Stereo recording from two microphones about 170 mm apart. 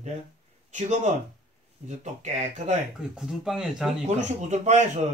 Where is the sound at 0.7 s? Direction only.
40° right (ahead or behind).